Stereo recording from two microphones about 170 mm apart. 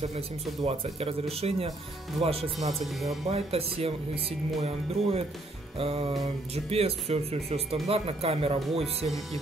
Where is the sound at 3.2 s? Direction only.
40° right (ahead or behind).